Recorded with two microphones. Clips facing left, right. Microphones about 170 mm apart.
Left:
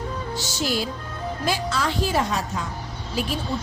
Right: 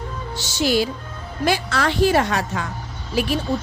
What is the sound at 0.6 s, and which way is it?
A woman's voice, 75° right (ahead or behind).